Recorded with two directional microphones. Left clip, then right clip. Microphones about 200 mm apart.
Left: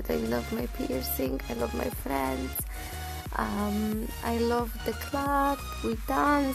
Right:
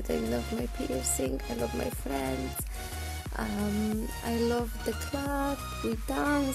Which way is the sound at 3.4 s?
5° right (ahead or behind).